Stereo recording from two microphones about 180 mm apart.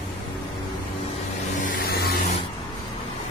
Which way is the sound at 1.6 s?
55° left (ahead or behind).